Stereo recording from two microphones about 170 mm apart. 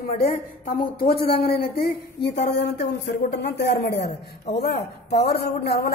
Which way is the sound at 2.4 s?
80° left.